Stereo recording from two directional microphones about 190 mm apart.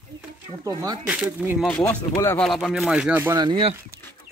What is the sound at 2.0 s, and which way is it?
Speech, 15° left (ahead or behind).